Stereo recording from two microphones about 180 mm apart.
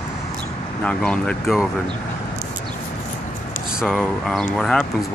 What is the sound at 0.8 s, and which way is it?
Speech, 5° left (ahead or behind).